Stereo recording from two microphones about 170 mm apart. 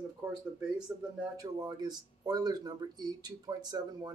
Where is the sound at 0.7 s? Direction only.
5° right (ahead or behind).